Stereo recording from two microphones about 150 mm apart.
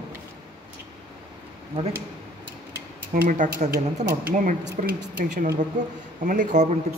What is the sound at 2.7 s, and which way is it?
Speech, 60° right (ahead or behind).